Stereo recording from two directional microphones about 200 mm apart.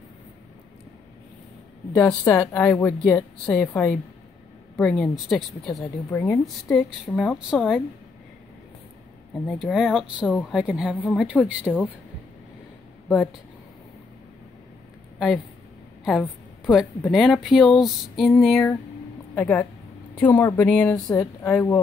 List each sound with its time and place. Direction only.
2.0 s a woman's voice: 5° left (ahead or behind)
5.7 s a woman's voice: 15° left (ahead or behind)
6.4 s a woman's voice: centre (ahead or behind)
9.5 s a woman's voice: centre (ahead or behind)
15.1 s a woman's voice: centre (ahead or behind)